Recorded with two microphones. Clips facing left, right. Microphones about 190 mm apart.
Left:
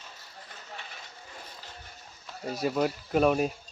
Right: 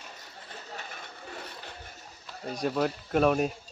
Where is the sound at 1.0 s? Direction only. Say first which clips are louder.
Right 5 dB; 70° right (ahead or behind).